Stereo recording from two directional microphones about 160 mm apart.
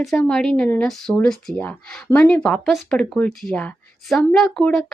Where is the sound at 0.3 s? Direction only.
5° left (ahead or behind).